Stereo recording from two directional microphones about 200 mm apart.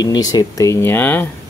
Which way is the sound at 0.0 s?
20° left (ahead or behind).